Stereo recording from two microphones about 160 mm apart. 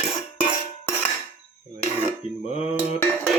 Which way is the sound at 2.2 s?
40° left (ahead or behind).